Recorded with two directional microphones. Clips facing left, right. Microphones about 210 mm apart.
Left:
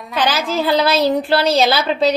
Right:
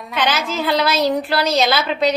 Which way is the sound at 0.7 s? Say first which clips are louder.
Left 2 dB; 30° left (ahead or behind).